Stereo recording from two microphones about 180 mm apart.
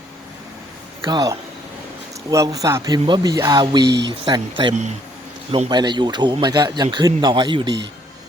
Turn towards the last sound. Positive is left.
turn(degrees=-25)  # may be behind; listen again after turning